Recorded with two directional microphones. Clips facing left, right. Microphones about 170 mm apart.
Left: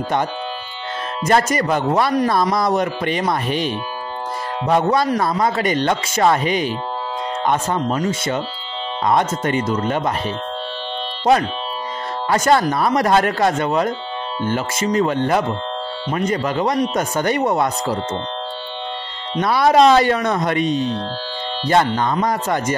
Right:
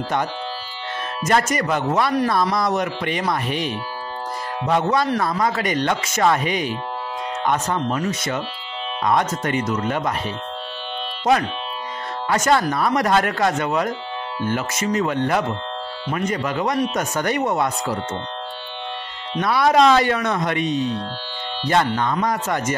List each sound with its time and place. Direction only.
1.2 s speech: 35° left (ahead or behind)
12.3 s speech: 35° left (ahead or behind)
19.4 s speech: 30° left (ahead or behind)